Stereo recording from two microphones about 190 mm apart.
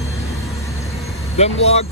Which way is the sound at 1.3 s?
35° left (ahead or behind).